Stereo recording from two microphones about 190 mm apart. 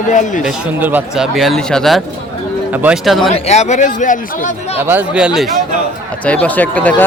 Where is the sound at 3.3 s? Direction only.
35° left (ahead or behind).